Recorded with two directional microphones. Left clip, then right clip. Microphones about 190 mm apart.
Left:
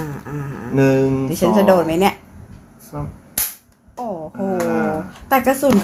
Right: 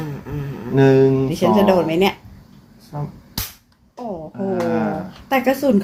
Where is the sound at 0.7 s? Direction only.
40° right (ahead or behind).